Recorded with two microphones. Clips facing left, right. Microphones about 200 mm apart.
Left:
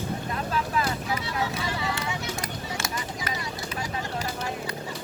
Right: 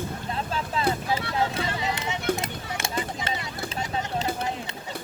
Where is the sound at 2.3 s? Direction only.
25° right (ahead or behind).